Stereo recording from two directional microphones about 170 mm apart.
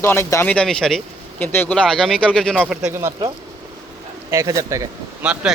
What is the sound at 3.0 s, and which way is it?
Speech, 20° right (ahead or behind).